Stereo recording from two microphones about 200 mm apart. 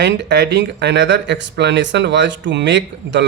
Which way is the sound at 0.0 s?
60° right (ahead or behind).